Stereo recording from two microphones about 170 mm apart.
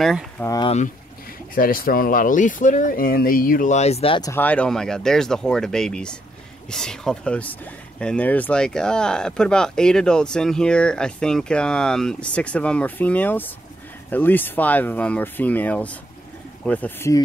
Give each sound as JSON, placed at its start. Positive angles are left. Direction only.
{"t": 0.4, "sound": "speech", "side_deg": 10}
{"t": 1.5, "sound": "speech", "side_deg": 55}
{"t": 4.2, "sound": "speech", "side_deg": 15}